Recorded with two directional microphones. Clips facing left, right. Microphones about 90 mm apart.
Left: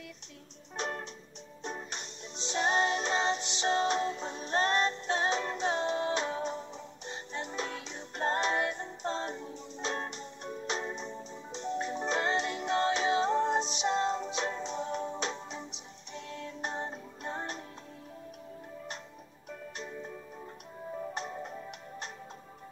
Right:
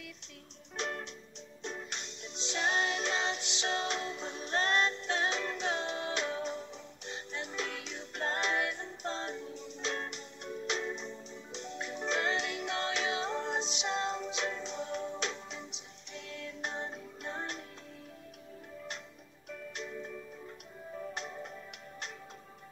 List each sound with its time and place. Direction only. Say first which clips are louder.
0.7 s music: left 2 dB; 25° left (ahead or behind)
2.5 s music: left 4 dB; 30° left (ahead or behind)
19.8 s music: even; 25° left (ahead or behind)